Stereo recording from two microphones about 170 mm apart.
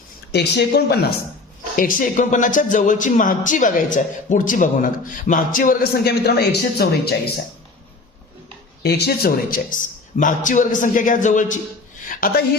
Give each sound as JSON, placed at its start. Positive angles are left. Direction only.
{"t": 0.3, "sound": "speech", "side_deg": 80}
{"t": 1.7, "sound": "speech", "side_deg": 55}
{"t": 8.8, "sound": "speech", "side_deg": 75}
{"t": 12.0, "sound": "a sound", "side_deg": 55}